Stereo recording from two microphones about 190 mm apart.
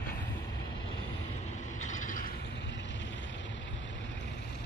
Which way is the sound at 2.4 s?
65° left (ahead or behind).